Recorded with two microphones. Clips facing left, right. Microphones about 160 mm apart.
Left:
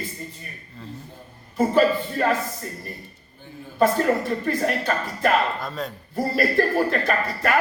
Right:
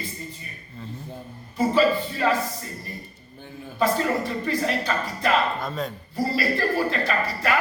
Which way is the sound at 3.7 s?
50° left (ahead or behind).